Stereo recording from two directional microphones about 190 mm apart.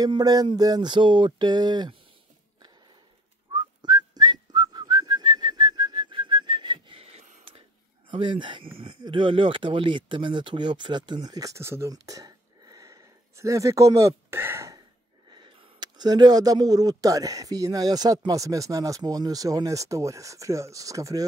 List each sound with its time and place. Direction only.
0.0 s speech: 20° right (ahead or behind)
3.5 s whistling: 20° right (ahead or behind)
8.1 s speech: 25° right (ahead or behind)